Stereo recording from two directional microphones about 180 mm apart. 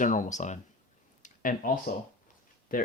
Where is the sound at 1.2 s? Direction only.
50° left (ahead or behind).